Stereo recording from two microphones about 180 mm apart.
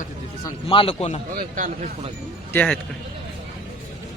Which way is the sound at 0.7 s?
30° left (ahead or behind).